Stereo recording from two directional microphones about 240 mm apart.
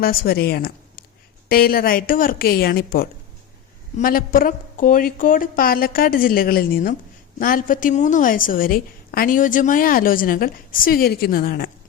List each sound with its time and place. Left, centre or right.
0.0 s a woman's voice: left